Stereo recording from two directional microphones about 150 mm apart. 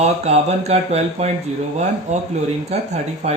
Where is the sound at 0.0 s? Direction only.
45° right (ahead or behind).